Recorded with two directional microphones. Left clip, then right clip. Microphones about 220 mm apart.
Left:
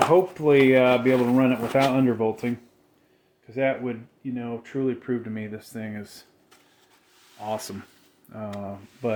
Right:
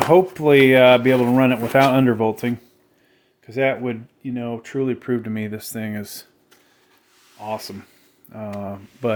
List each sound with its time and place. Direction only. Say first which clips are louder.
0.1 s speech: right 5 dB; 45° right (ahead or behind)
3.4 s speech: right 4 dB; 55° right (ahead or behind); by 6.2 s 40° right (ahead or behind)
7.3 s speech: right 2 dB; 5° right (ahead or behind)
8.5 s speech: right 5 dB; 25° right (ahead or behind)